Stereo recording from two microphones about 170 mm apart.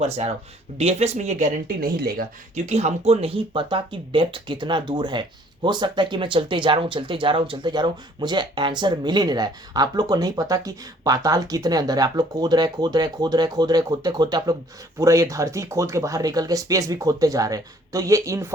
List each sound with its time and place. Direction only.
0.0 s speech: 40° right (ahead or behind); by 2.2 s 65° right (ahead or behind)
2.6 s speech: 40° right (ahead or behind); by 18.4 s 20° right (ahead or behind)